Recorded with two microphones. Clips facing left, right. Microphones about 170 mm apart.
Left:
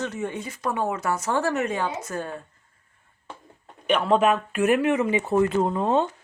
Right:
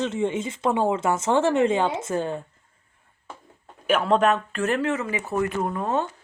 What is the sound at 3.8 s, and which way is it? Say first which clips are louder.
Speech: even; centre (ahead or behind).